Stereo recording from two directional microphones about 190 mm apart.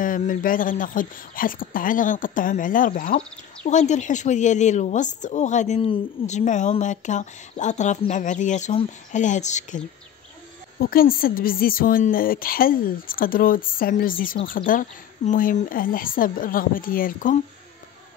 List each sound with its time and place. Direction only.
0.0 s a woman's voice: 45° left (ahead or behind)
10.8 s a woman's voice: 50° left (ahead or behind)